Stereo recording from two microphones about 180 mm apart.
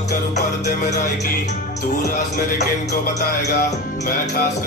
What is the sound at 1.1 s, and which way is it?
Music, 40° left (ahead or behind).